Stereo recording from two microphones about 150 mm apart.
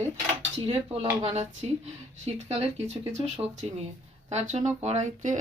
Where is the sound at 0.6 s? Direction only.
35° right (ahead or behind).